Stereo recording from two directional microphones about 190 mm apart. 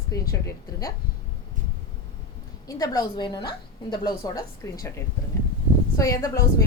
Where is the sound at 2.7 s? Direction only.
20° left (ahead or behind).